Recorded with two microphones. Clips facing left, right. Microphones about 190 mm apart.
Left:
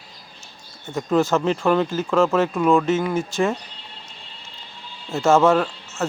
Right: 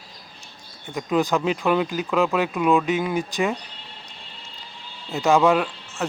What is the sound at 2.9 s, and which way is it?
Speech, 15° right (ahead or behind).